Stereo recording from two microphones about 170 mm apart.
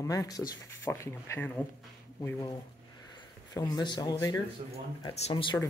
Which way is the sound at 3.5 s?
25° left (ahead or behind).